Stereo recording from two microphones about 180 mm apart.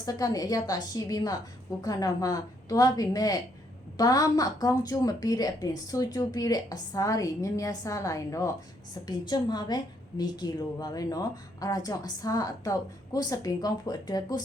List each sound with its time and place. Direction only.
0.0 s a woman's voice: 20° left (ahead or behind)